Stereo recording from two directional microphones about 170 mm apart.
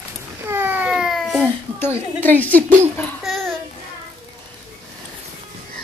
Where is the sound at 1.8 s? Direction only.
10° left (ahead or behind).